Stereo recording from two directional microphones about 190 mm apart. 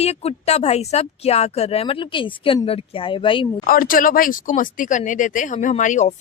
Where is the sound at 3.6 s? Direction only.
50° left (ahead or behind).